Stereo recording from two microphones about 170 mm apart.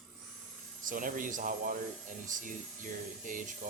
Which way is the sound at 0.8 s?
55° right (ahead or behind).